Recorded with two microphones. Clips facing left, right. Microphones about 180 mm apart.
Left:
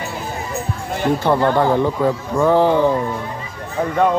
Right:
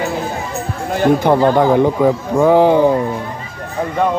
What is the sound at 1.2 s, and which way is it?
Speech, 15° right (ahead or behind).